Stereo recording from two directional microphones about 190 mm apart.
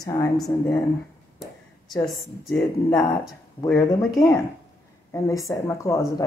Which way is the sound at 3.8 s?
20° left (ahead or behind).